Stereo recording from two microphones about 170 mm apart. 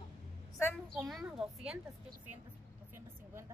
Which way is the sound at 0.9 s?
5° right (ahead or behind).